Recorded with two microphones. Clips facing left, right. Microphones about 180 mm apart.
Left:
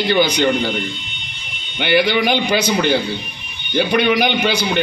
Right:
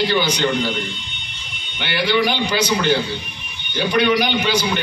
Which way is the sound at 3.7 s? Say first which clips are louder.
Left 2 dB; 55° left (ahead or behind).